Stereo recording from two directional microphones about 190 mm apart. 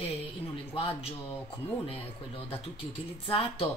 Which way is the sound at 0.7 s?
30° left (ahead or behind).